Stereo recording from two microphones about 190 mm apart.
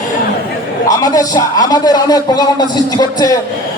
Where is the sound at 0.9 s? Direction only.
20° left (ahead or behind).